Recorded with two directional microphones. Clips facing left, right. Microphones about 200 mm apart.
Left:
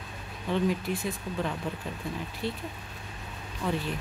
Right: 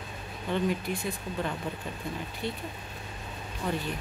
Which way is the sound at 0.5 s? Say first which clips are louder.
Left 1 dB; centre (ahead or behind).